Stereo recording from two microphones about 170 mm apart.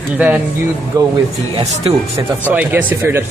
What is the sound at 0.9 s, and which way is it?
Speech, 20° right (ahead or behind).